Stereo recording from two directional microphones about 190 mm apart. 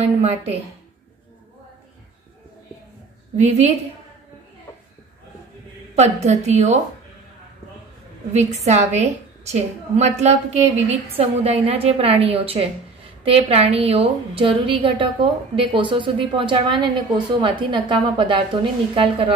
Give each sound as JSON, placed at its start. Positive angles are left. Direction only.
{"t": 0.0, "sound": "a woman's voice", "side_deg": -35}
{"t": 3.3, "sound": "a woman's voice", "side_deg": -35}
{"t": 6.2, "sound": "a woman's voice", "side_deg": -35}
{"t": 8.3, "sound": "a woman's voice", "side_deg": -35}